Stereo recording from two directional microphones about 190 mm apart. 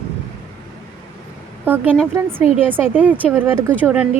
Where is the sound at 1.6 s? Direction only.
10° right (ahead or behind).